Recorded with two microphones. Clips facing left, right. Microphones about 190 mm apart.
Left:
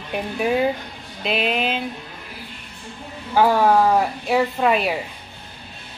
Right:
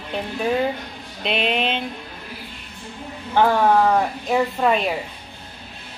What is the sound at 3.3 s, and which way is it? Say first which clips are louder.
A woman's voice: left 1 dB; 10° left (ahead or behind).